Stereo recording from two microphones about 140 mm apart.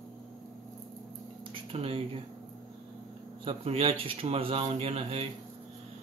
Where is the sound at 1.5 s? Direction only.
40° right (ahead or behind).